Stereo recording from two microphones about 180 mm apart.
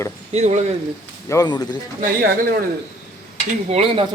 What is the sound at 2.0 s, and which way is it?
Speech, 50° right (ahead or behind).